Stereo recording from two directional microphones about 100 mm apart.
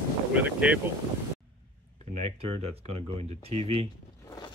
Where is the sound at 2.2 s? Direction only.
75° right (ahead or behind).